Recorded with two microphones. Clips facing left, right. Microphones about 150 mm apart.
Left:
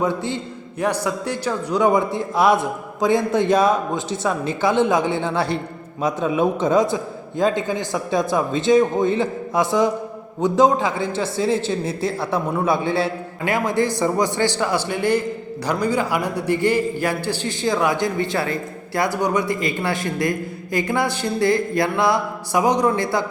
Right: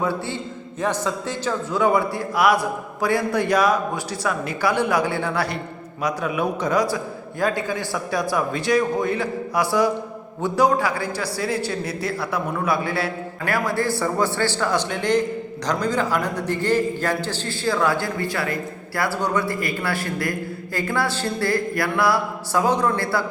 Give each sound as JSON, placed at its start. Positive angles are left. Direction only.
{"t": 0.0, "sound": "a man's voice", "side_deg": 20}